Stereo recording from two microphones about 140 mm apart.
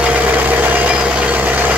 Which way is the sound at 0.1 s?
10° right (ahead or behind).